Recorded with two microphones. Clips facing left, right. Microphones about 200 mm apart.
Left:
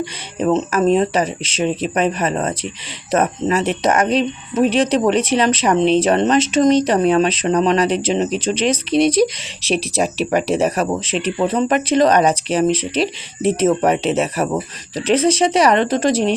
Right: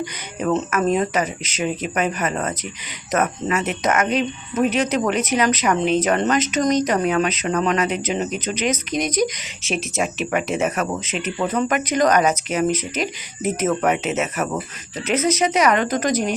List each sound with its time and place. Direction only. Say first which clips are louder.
0.0 s speech: left 4 dB; 25° left (ahead or behind)